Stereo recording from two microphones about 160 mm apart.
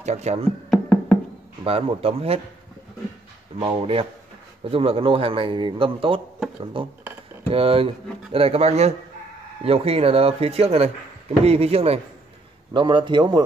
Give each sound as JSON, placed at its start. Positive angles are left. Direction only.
{"t": 0.0, "sound": "speech", "side_deg": -45}
{"t": 0.7, "sound": "music", "side_deg": 5}
{"t": 1.6, "sound": "a man's voice", "side_deg": -40}
{"t": 3.5, "sound": "a man's voice", "side_deg": -35}